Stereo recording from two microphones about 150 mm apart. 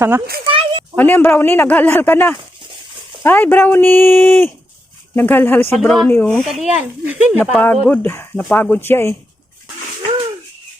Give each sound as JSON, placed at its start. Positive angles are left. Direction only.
{"t": 0.4, "sound": "a sound", "side_deg": -35}
{"t": 0.9, "sound": "speech", "side_deg": 10}
{"t": 5.7, "sound": "speech", "side_deg": 0}
{"t": 6.1, "sound": "speech", "side_deg": 10}
{"t": 6.7, "sound": "speech", "side_deg": -10}
{"t": 7.5, "sound": "speech", "side_deg": 10}
{"t": 8.4, "sound": "speech", "side_deg": 5}